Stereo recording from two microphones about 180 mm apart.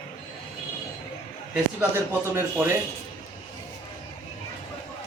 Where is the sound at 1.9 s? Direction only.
15° right (ahead or behind).